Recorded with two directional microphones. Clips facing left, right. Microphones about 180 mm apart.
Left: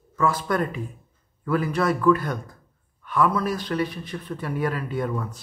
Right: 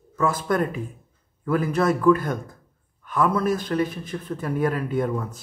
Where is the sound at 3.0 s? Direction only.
45° right (ahead or behind).